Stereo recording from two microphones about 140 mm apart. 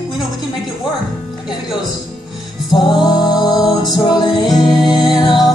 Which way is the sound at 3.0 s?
30° left (ahead or behind).